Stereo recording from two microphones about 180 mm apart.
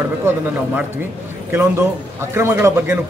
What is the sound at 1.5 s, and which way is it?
A man's voice, 15° right (ahead or behind).